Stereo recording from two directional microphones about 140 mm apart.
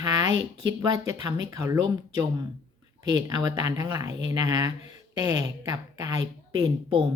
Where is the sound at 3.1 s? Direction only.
25° right (ahead or behind).